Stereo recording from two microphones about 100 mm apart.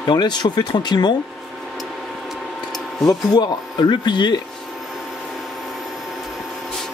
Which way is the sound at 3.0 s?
40° left (ahead or behind).